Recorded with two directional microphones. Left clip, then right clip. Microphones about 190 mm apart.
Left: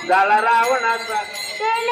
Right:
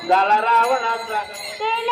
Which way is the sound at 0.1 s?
35° left (ahead or behind).